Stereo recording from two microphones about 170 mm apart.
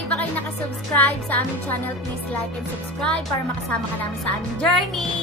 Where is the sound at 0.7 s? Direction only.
5° left (ahead or behind).